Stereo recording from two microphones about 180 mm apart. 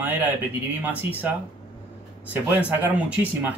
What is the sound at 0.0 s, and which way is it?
Speech, 10° right (ahead or behind).